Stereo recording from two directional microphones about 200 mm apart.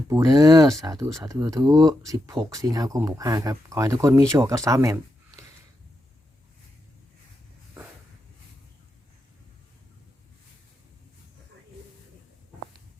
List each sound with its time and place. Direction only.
0.1 s speech: 15° right (ahead or behind)